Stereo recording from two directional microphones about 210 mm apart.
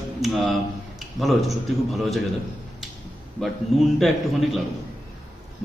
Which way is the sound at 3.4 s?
Centre (ahead or behind).